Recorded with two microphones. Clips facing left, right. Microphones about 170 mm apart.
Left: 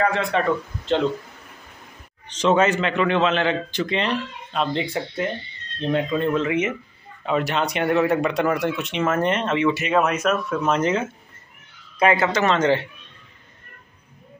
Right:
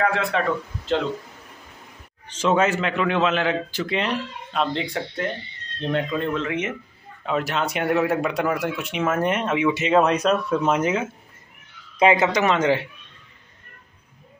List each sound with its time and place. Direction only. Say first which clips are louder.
0.0 s speech: left 1 dB; 5° right (ahead or behind)
2.2 s speech: left 2 dB; 5° right (ahead or behind)
9.8 s speech: right 2 dB; 30° right (ahead or behind)
10.7 s speech: left 3 dB; 10° right (ahead or behind)
12.0 s speech: right 1 dB; 20° right (ahead or behind)